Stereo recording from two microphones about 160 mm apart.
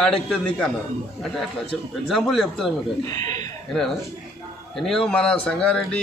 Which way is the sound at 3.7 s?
Centre (ahead or behind).